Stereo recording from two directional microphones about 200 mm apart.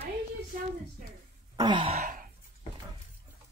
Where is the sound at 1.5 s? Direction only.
20° right (ahead or behind); by 2.3 s 40° right (ahead or behind).